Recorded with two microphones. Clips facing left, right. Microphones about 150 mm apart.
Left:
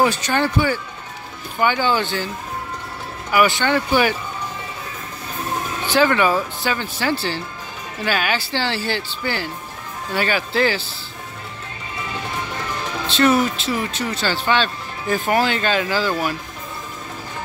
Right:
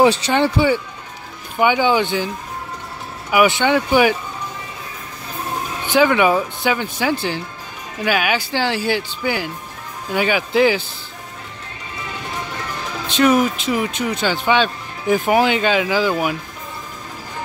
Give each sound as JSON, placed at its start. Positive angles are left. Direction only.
{"t": 0.3, "sound": "speech", "side_deg": -20}
{"t": 3.3, "sound": "speech", "side_deg": -15}
{"t": 5.9, "sound": "speech", "side_deg": -15}
{"t": 13.1, "sound": "speech", "side_deg": -10}